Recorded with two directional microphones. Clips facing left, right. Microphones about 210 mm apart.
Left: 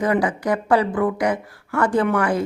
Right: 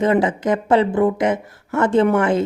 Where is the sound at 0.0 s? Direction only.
25° right (ahead or behind).